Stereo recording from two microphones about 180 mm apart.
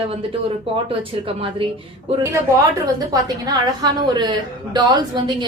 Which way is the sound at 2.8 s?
20° right (ahead or behind).